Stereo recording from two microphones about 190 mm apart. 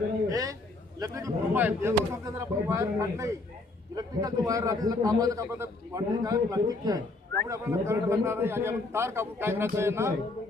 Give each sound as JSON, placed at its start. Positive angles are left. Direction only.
{"t": 0.3, "sound": "a man's voice", "side_deg": -20}